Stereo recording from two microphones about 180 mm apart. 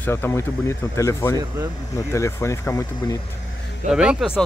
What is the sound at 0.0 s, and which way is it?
Speech, 10° left (ahead or behind).